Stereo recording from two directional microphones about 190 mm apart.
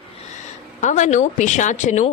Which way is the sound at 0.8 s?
40° left (ahead or behind).